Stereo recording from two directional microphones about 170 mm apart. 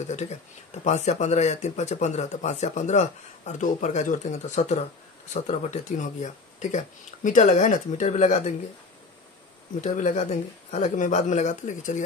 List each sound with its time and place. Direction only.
0.0 s speech: 45° left (ahead or behind)
9.8 s speech: 45° left (ahead or behind)